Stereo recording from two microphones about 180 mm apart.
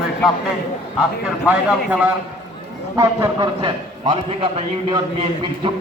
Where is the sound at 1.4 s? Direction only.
10° right (ahead or behind).